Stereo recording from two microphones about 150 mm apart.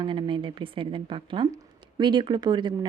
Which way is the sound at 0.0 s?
35° right (ahead or behind).